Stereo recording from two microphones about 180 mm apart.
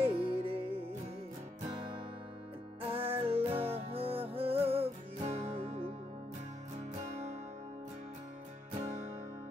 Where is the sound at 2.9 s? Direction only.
30° right (ahead or behind).